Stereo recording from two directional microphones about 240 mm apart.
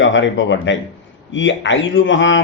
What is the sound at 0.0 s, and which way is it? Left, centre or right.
Speech, left.